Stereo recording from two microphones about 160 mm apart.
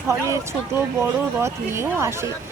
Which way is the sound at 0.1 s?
15° right (ahead or behind).